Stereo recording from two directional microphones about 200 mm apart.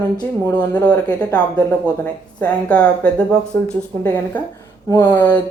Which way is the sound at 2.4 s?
5° left (ahead or behind).